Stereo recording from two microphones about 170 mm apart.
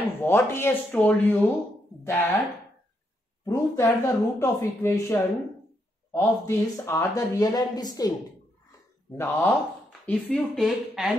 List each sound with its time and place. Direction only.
0.2 s speech: 15° left (ahead or behind)
3.4 s speech: 15° left (ahead or behind)
9.1 s speech: 10° left (ahead or behind)